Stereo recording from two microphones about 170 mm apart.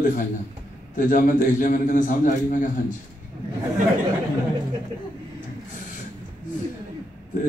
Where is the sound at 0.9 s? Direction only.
50° left (ahead or behind).